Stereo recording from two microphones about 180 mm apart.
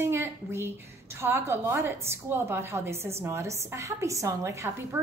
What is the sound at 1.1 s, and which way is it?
A woman's voice, 15° right (ahead or behind).